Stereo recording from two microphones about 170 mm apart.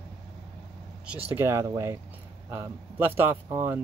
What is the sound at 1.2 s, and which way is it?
A man's voice, 15° right (ahead or behind).